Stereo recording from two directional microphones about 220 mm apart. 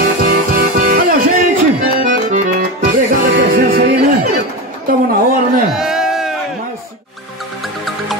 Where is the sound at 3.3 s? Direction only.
40° right (ahead or behind).